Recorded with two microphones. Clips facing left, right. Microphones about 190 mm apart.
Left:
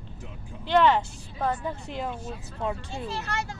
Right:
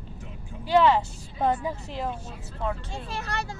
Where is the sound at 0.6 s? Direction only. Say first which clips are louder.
Right 1 dB; 5° right (ahead or behind).